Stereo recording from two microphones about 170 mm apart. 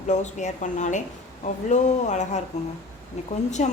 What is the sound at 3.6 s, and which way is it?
Speech, 45° left (ahead or behind).